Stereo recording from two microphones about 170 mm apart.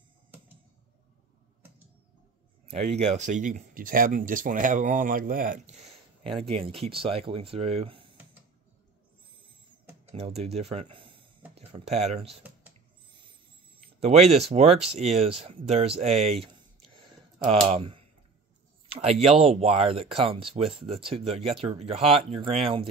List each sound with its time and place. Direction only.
2.7 s speech: 40° right (ahead or behind)
6.2 s speech: 35° right (ahead or behind)
10.1 s speech: 40° right (ahead or behind)
13.8 s speech: 35° right (ahead or behind)
16.9 s a sound: 30° right (ahead or behind)
18.9 s speech: 40° right (ahead or behind)